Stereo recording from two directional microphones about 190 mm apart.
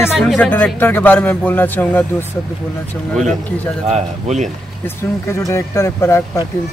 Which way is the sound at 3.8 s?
35° right (ahead or behind).